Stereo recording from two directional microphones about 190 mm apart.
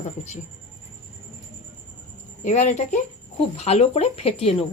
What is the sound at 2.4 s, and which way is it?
Speech, 35° left (ahead or behind).